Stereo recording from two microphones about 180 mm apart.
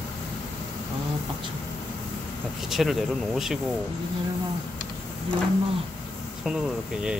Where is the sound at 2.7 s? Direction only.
Centre (ahead or behind).